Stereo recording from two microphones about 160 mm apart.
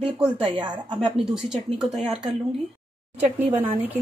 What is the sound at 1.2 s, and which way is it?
Speech, 5° right (ahead or behind).